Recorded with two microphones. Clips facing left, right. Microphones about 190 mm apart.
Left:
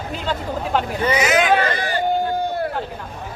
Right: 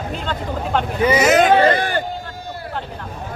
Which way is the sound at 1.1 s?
40° right (ahead or behind).